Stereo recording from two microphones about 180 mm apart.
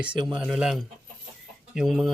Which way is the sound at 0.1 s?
25° right (ahead or behind).